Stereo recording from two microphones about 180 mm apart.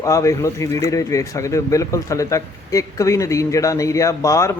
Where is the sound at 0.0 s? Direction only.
15° left (ahead or behind).